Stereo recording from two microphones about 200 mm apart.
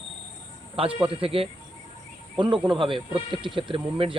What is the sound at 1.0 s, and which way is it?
Speech, 25° right (ahead or behind).